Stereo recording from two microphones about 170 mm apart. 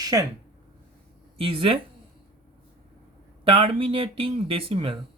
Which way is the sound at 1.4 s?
30° right (ahead or behind).